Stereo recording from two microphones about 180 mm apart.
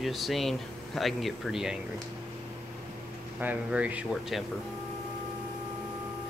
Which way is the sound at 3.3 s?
10° right (ahead or behind).